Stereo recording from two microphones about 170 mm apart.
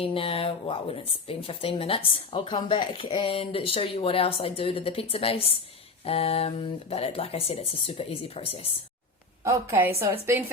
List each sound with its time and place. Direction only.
0.0 s speech: 35° left (ahead or behind)
9.4 s a woman's voice: 15° right (ahead or behind)